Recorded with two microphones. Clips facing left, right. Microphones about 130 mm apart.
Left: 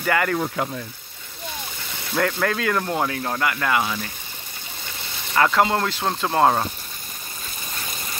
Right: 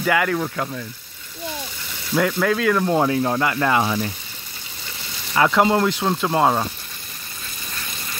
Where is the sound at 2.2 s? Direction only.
5° right (ahead or behind).